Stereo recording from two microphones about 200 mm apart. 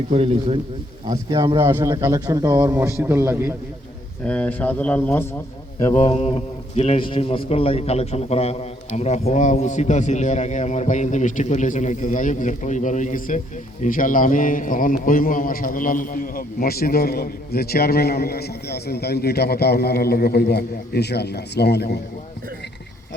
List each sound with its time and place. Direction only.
0.1 s speech: 30° right (ahead or behind)
1.4 s a man's voice: 15° right (ahead or behind)
4.2 s speech: 5° left (ahead or behind)
5.9 s a man's voice: 30° left (ahead or behind); by 22.0 s 55° left (ahead or behind)